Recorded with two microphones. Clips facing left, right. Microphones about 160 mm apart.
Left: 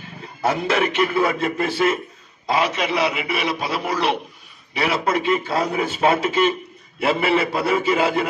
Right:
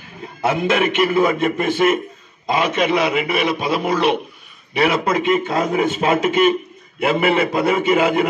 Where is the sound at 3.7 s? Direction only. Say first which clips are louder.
Right 5 dB; 20° right (ahead or behind).